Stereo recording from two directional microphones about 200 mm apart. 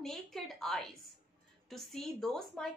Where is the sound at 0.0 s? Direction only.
Centre (ahead or behind).